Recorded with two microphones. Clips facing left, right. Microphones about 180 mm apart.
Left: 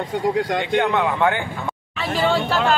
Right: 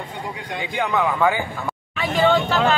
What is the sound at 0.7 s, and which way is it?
Speech, centre (ahead or behind).